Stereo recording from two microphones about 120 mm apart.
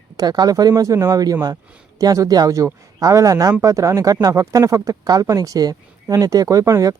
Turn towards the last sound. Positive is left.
turn(degrees=-30)  # may be behind; listen again after turning